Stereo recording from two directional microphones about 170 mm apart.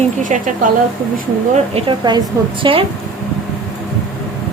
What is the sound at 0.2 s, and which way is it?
Speech, 50° right (ahead or behind).